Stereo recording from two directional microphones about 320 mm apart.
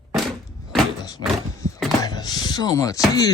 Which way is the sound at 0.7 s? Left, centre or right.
Centre.